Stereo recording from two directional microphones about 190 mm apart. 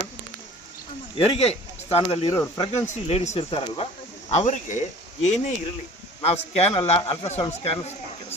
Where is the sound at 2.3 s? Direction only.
15° left (ahead or behind).